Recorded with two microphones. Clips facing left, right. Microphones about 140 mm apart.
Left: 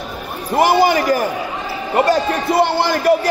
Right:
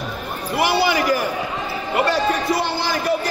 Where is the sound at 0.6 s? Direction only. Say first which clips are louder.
Left 5 dB; 45° left (ahead or behind).